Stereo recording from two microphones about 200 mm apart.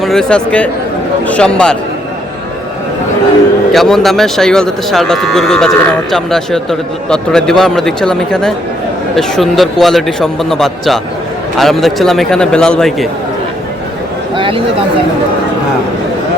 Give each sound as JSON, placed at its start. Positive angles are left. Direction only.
{"t": 0.0, "sound": "speech", "side_deg": 0}
{"t": 3.7, "sound": "speech", "side_deg": 0}
{"t": 14.3, "sound": "speech", "side_deg": -25}